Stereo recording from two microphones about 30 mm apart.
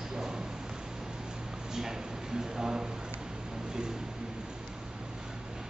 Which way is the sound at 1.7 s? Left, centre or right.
Centre.